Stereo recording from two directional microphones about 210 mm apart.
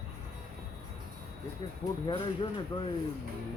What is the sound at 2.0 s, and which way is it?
Speech, 20° left (ahead or behind).